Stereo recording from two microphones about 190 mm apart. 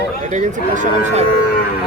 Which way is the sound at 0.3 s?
40° right (ahead or behind).